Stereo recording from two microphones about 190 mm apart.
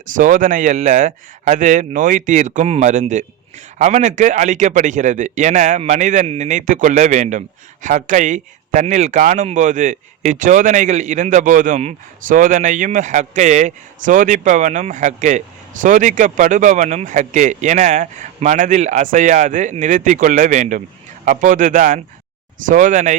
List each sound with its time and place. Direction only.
0.2 s a man's voice: 45° right (ahead or behind)